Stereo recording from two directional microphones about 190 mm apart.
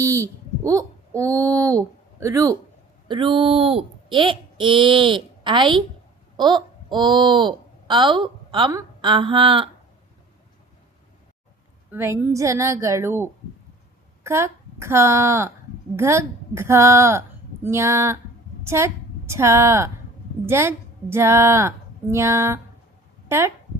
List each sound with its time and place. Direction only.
0.0 s a woman's voice: 15° right (ahead or behind)
11.9 s a woman's voice: 10° right (ahead or behind)